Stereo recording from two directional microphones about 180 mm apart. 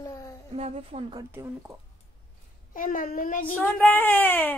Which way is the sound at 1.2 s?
15° right (ahead or behind).